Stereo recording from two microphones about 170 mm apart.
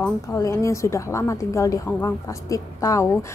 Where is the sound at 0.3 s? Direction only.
20° left (ahead or behind).